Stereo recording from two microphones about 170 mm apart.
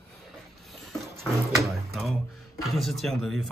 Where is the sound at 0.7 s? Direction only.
Centre (ahead or behind).